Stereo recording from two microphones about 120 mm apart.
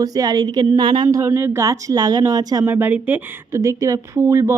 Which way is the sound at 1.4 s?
20° right (ahead or behind).